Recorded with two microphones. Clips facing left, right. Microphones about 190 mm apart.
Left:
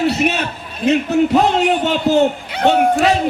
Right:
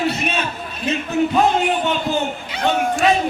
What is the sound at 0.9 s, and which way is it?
A man's voice, 75° left (ahead or behind).